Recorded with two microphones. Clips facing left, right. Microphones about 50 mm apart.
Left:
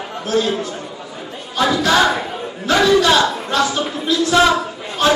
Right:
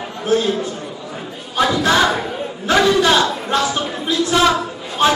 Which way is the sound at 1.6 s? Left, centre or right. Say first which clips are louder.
Even; centre.